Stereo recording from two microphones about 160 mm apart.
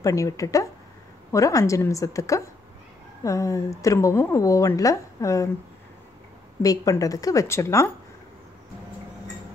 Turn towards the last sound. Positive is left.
turn(degrees=15)  # may be behind; listen again after turning